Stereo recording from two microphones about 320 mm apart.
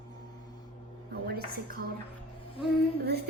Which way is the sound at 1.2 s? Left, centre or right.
Right.